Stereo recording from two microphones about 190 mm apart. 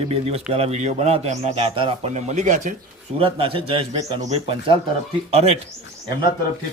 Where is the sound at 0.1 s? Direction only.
30° right (ahead or behind).